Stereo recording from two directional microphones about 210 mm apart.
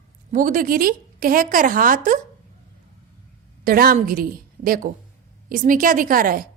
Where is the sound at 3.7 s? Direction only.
45° right (ahead or behind).